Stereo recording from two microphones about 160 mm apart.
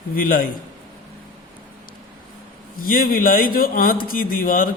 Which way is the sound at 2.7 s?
60° left (ahead or behind).